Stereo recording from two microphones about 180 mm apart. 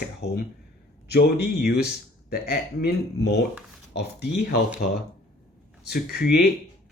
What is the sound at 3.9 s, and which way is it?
Speech, 65° left (ahead or behind).